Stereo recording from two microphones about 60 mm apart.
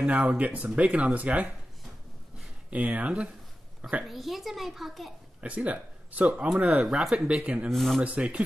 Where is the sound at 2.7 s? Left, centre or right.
Right.